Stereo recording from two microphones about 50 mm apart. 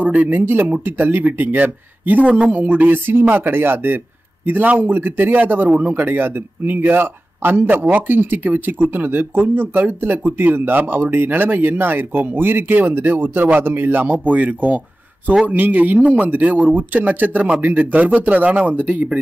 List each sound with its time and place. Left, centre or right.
0.0 s speech: right